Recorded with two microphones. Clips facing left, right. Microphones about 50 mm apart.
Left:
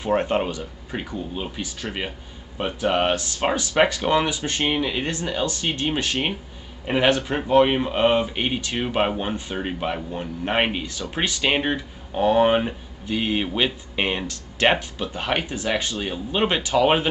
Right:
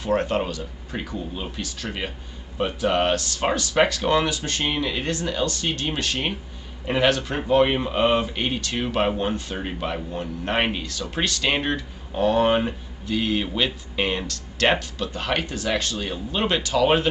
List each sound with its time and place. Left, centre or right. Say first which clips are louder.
0.0 s speech: left 1 dB; centre